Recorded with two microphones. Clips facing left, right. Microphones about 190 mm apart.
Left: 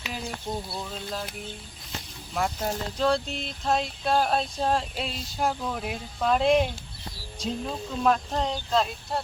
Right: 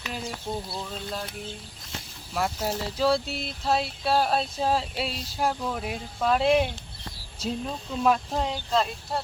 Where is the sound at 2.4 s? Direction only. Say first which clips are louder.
Even; centre (ahead or behind).